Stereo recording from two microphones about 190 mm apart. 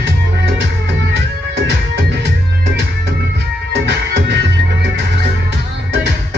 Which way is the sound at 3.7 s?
65° right (ahead or behind).